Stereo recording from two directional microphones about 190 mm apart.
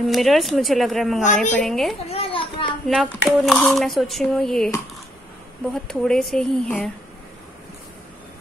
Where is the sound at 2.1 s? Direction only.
30° left (ahead or behind).